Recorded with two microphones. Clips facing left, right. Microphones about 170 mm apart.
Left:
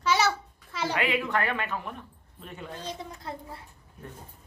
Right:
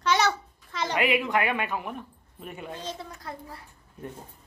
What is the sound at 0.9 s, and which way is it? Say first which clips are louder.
Speech: right 4 dB; 15° right (ahead or behind).